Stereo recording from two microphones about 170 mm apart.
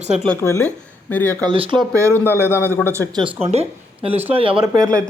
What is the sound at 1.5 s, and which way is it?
Speech, 35° right (ahead or behind).